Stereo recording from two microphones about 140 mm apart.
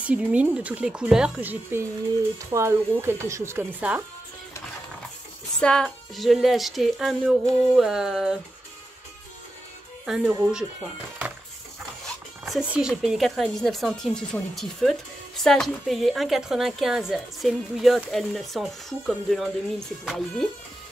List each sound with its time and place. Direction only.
0.0 s speech: 10° right (ahead or behind)
5.6 s speech: 5° left (ahead or behind)
10.0 s speech: 5° right (ahead or behind)
12.4 s speech: 5° right (ahead or behind)